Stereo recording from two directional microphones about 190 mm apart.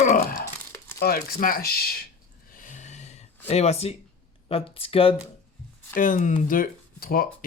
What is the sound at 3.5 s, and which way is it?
Speech, 35° left (ahead or behind).